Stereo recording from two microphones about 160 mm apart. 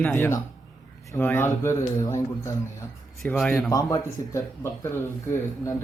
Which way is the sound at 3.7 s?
20° left (ahead or behind).